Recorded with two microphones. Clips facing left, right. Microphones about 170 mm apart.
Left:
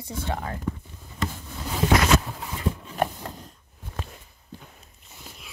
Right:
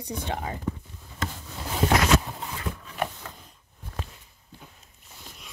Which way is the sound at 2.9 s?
40° left (ahead or behind).